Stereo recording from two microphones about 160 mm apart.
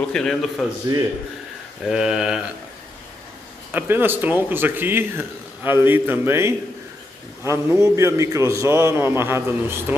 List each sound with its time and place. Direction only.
0.1 s speech: 5° left (ahead or behind)
1.9 s speech: 5° right (ahead or behind)
3.7 s speech: 15° right (ahead or behind)